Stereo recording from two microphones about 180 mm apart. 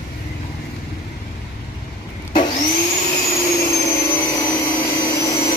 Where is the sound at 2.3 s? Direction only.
40° left (ahead or behind).